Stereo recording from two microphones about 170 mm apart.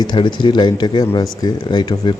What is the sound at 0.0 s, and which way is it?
Speech, 25° left (ahead or behind).